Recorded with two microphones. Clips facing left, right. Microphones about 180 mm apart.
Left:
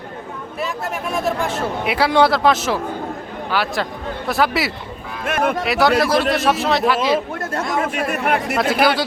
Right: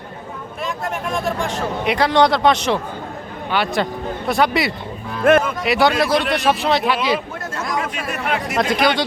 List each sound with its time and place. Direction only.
1.8 s speech: 5° left (ahead or behind)
5.2 s speech: 50° right (ahead or behind)
5.6 s speech: centre (ahead or behind)
7.8 s speech: 55° left (ahead or behind)
8.5 s speech: 5° left (ahead or behind)